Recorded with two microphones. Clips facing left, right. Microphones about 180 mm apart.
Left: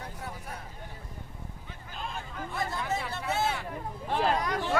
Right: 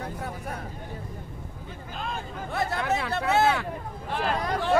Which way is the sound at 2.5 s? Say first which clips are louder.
Right 6 dB; 70° right (ahead or behind).